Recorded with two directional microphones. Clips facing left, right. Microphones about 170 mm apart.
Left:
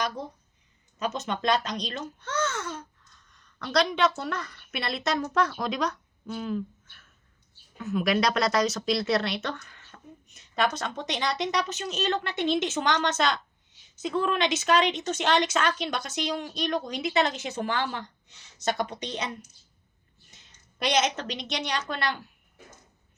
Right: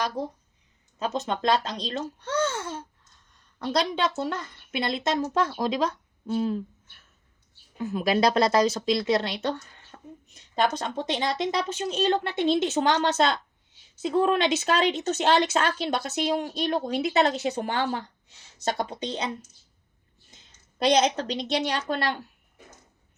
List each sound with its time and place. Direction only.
0.9 s a child's voice: 25° right (ahead or behind)
7.8 s a woman's voice: 30° right (ahead or behind)
20.3 s a woman's voice: 30° right (ahead or behind)